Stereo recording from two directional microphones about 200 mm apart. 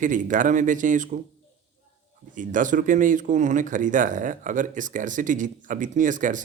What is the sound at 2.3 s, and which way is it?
Speech, 40° right (ahead or behind).